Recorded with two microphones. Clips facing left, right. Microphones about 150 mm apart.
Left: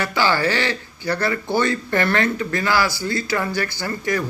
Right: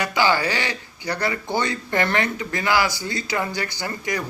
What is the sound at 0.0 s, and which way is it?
Speech, 15° right (ahead or behind).